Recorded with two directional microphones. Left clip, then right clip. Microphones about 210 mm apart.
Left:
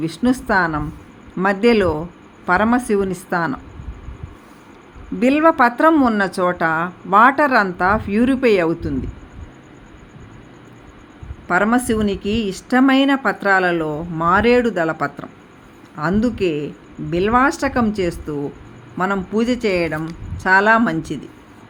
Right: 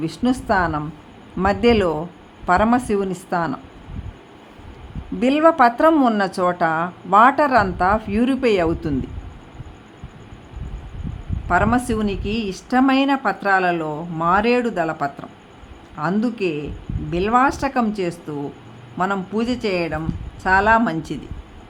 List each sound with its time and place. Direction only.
0.0 s speech: centre (ahead or behind)
5.2 s speech: centre (ahead or behind)
11.4 s speech: 5° left (ahead or behind)